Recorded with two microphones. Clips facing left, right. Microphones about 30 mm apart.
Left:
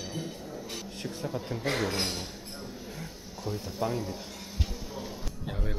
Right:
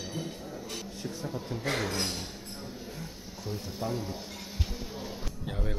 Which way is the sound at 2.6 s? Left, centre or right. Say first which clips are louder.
Even; centre.